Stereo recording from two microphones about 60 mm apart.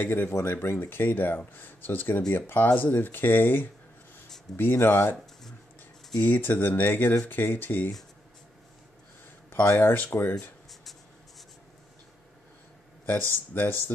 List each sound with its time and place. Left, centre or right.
0.0 s speech: left
6.1 s speech: left
9.8 s speech: left
10.7 s writing: centre
13.0 s speech: left